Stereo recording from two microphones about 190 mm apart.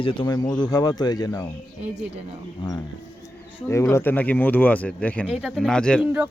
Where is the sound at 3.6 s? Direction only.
15° left (ahead or behind).